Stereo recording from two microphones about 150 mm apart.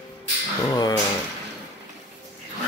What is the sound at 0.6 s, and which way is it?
Speech, 25° left (ahead or behind).